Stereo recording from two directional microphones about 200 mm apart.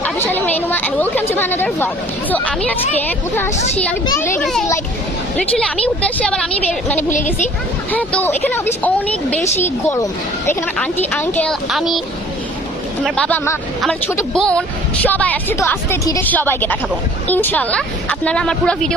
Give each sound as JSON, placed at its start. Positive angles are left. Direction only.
{"t": 0.0, "sound": "a sound", "side_deg": 10}
{"t": 2.3, "sound": "a woman's voice", "side_deg": 5}
{"t": 13.1, "sound": "a woman's voice", "side_deg": 5}